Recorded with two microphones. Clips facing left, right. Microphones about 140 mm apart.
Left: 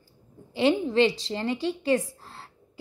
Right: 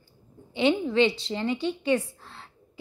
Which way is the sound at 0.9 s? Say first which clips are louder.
Left 1 dB; 35° left (ahead or behind).